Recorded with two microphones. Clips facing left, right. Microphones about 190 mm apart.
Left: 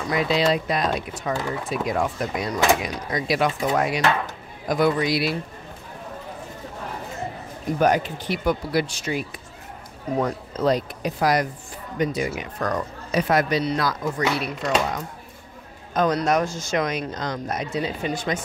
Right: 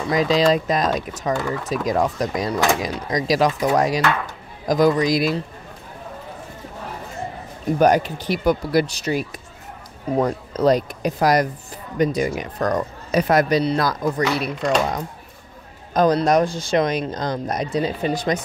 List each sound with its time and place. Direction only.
0.1 s speech: 40° right (ahead or behind)
7.8 s speech: 40° right (ahead or behind)
10.2 s speech: 40° right (ahead or behind)